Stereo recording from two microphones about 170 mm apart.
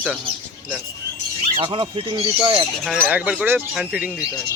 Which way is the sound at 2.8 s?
5° right (ahead or behind).